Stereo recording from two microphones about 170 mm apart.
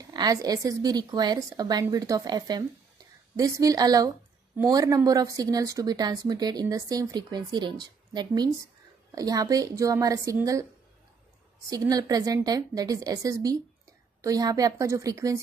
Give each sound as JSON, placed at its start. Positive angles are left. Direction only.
{"t": 0.0, "sound": "speech", "side_deg": -20}
{"t": 11.7, "sound": "speech", "side_deg": -20}